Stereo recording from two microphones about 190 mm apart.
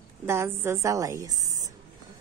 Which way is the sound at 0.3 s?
15° right (ahead or behind).